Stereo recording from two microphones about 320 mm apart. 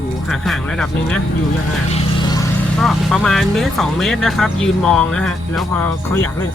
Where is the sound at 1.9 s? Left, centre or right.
Centre.